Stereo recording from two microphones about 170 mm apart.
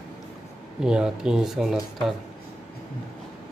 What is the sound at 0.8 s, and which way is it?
Speech, 5° right (ahead or behind).